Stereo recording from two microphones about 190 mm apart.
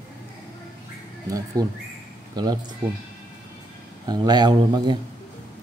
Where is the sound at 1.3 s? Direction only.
20° right (ahead or behind).